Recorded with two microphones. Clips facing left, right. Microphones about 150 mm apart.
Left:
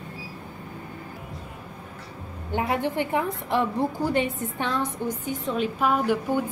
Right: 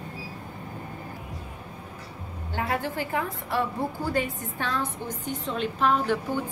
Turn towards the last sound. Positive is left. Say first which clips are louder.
# left 2 dB
turn(degrees=10)  # may be behind; listen again after turning